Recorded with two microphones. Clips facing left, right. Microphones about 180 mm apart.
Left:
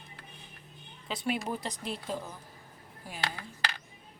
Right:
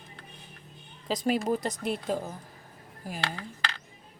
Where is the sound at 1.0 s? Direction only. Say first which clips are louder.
Right 6 dB; 40° right (ahead or behind).